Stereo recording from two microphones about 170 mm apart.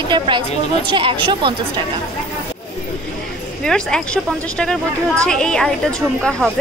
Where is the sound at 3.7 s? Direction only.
5° left (ahead or behind).